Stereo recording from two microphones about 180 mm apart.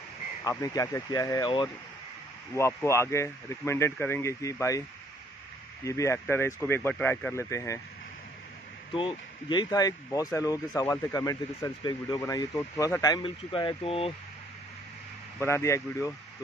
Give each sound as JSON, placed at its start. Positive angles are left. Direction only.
{"t": 0.5, "sound": "speech", "side_deg": 20}
{"t": 5.9, "sound": "speech", "side_deg": 15}
{"t": 8.9, "sound": "speech", "side_deg": 25}
{"t": 15.3, "sound": "speech", "side_deg": 15}